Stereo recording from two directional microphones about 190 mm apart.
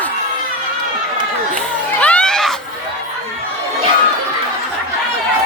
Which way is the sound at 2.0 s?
5° left (ahead or behind).